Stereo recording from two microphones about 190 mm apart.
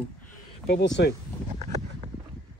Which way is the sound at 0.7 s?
65° left (ahead or behind).